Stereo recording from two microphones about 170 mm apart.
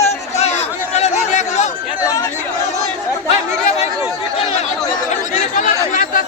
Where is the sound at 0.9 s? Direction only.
40° left (ahead or behind).